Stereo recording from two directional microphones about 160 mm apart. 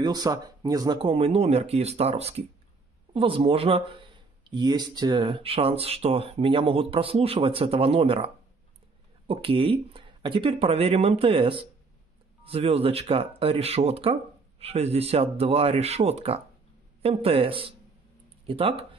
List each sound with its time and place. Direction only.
0.0 s speech: 25° right (ahead or behind)
9.3 s speech: 35° right (ahead or behind)